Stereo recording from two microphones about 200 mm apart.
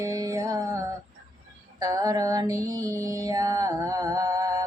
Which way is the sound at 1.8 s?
15° right (ahead or behind).